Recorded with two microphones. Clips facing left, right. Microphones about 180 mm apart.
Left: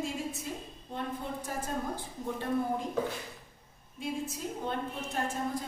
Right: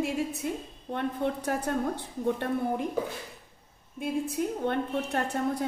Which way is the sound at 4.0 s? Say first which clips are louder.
Right 6 dB; 60° right (ahead or behind).